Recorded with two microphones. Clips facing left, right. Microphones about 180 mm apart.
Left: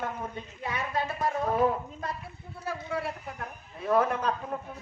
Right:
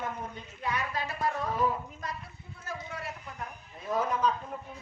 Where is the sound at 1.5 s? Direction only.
60° left (ahead or behind).